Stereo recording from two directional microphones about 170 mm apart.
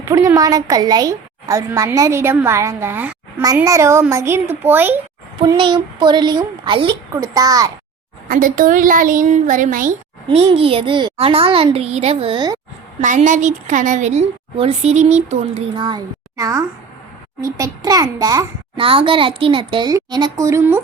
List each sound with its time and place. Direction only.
0.0 s a woman's voice: 15° right (ahead or behind)
5.5 s a child's voice: 30° right (ahead or behind)
8.3 s a woman's voice: 55° right (ahead or behind)
10.2 s a child's voice: 35° right (ahead or behind)
13.0 s a woman's voice: 45° right (ahead or behind)
15.7 s a child's voice: 30° right (ahead or behind)